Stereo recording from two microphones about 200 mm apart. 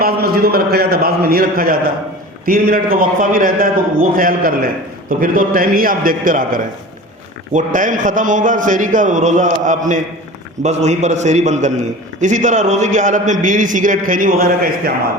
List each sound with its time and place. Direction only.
0.0 s a man's voice: 50° right (ahead or behind)